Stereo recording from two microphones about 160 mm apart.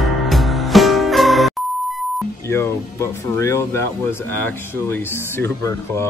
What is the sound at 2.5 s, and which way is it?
Speech, 15° left (ahead or behind).